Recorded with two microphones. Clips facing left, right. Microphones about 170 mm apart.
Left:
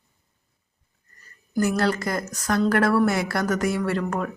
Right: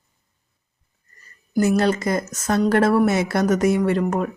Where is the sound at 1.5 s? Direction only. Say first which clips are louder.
Right 4 dB; 20° right (ahead or behind).